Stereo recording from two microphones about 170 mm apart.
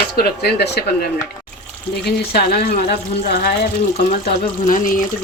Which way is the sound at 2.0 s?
75° left (ahead or behind).